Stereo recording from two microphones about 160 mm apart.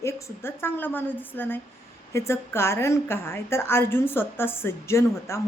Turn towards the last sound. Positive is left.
turn(degrees=15)  # may be behind; listen again after turning